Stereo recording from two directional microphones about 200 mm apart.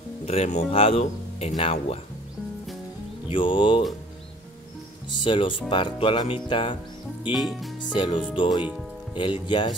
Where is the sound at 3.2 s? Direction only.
25° left (ahead or behind).